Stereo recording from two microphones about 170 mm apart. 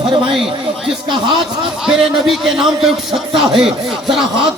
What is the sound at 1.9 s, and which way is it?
A man's voice, 5° right (ahead or behind).